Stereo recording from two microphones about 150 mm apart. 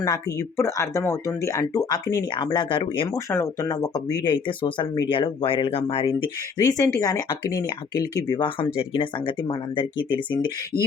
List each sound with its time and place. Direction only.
0.0 s speech: 20° left (ahead or behind)
3.2 s speech: 20° left (ahead or behind); by 6.3 s 35° left (ahead or behind)
6.6 s speech: 25° left (ahead or behind)